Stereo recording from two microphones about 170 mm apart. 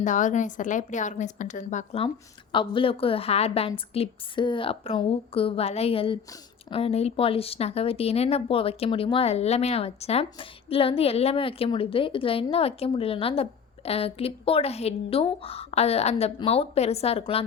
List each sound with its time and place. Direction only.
0.0 s a woman's voice: 50° left (ahead or behind)
2.0 s speech: 30° left (ahead or behind)